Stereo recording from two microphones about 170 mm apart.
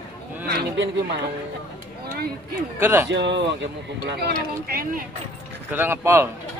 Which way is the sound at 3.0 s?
90° right.